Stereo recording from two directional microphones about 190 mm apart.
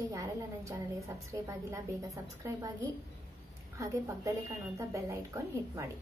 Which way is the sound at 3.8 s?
15° right (ahead or behind).